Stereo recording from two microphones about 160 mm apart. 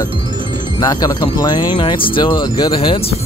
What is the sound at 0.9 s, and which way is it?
Speech, 25° left (ahead or behind).